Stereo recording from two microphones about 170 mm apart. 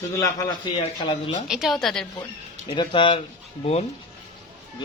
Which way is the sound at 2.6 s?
25° left (ahead or behind).